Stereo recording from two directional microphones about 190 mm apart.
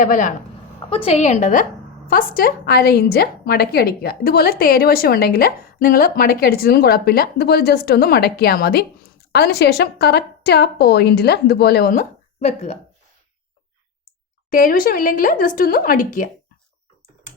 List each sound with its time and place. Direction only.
0.0 s a woman's voice: 45° left (ahead or behind)
0.9 s a woman's voice: 30° left (ahead or behind); by 12.0 s 50° left (ahead or behind)
12.4 s a woman's voice: 35° left (ahead or behind)
14.5 s a woman's voice: 45° left (ahead or behind)